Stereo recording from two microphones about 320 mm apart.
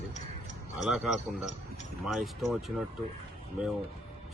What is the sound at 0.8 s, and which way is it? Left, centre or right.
Speech, centre.